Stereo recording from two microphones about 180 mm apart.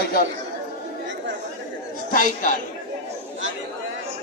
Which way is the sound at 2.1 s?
50° left (ahead or behind).